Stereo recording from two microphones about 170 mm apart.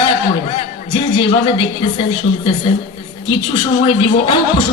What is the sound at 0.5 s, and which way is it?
A man's voice, 30° left (ahead or behind).